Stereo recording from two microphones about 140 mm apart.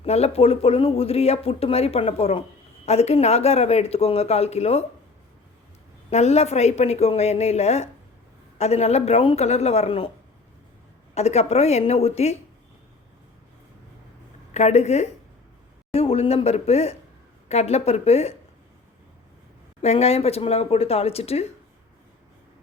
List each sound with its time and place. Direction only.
0.0 s speech: 45° left (ahead or behind)
6.1 s speech: 50° left (ahead or behind)
11.1 s speech: 50° left (ahead or behind)
14.5 s speech: 50° left (ahead or behind)
19.8 s speech: 45° left (ahead or behind)